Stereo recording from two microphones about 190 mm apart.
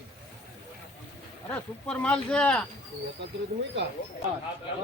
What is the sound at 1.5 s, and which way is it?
Speech, 5° left (ahead or behind).